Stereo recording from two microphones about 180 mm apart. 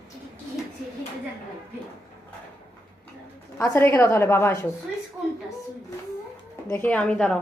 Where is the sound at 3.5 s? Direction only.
10° left (ahead or behind).